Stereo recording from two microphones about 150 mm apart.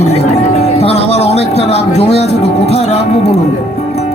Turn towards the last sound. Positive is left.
turn(degrees=45)  # may be behind; listen again after turning